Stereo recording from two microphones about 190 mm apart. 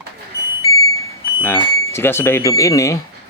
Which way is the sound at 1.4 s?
10° left (ahead or behind).